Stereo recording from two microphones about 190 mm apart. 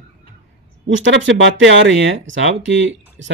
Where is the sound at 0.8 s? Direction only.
80° right.